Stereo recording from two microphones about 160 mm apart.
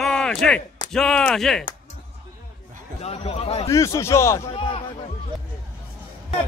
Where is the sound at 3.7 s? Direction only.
20° left (ahead or behind).